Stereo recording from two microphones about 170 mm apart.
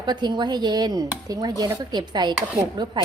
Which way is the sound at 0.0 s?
25° right (ahead or behind).